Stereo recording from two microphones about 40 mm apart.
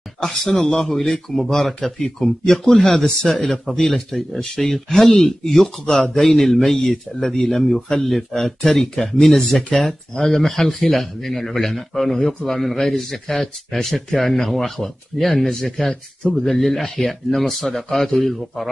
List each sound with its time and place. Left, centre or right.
0.2 s speech: centre
2.9 s speech: centre